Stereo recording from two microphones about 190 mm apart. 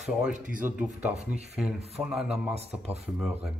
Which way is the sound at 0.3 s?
45° right (ahead or behind).